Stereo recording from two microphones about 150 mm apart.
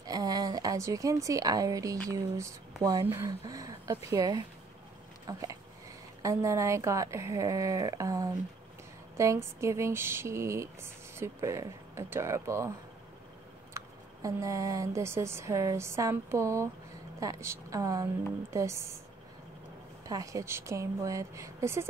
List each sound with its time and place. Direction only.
0.0 s speech: 25° right (ahead or behind)
13.7 s speech: 20° right (ahead or behind)
20.1 s speech: 25° right (ahead or behind)